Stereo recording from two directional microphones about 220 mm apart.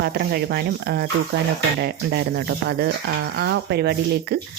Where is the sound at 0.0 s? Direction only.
45° right (ahead or behind).